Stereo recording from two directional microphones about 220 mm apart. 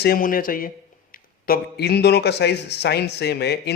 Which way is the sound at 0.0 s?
40° left (ahead or behind).